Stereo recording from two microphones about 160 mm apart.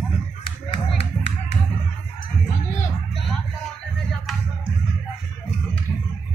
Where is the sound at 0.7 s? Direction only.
40° left (ahead or behind).